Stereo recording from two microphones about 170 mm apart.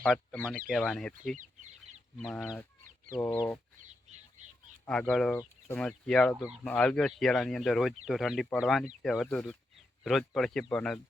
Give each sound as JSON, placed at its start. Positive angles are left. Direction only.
{"t": 0.0, "sound": "speech", "side_deg": 0}
{"t": 4.9, "sound": "speech", "side_deg": 5}
{"t": 6.7, "sound": "speech", "side_deg": 5}